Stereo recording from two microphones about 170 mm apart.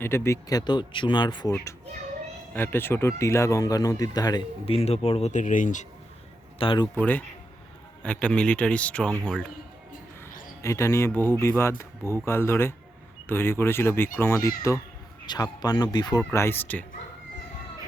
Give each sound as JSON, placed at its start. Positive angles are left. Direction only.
{"t": 0.0, "sound": "speech", "side_deg": 15}
{"t": 2.6, "sound": "speech", "side_deg": 10}
{"t": 4.6, "sound": "speech", "side_deg": 35}
{"t": 6.6, "sound": "speech", "side_deg": 30}
{"t": 8.0, "sound": "speech", "side_deg": 5}
{"t": 10.6, "sound": "speech", "side_deg": 15}